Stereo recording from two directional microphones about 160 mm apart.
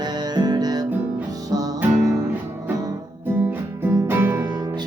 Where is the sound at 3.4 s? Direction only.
15° right (ahead or behind).